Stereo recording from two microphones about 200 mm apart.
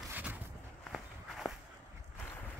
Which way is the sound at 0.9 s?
Centre (ahead or behind).